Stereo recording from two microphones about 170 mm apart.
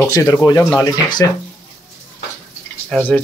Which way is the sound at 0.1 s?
20° left (ahead or behind).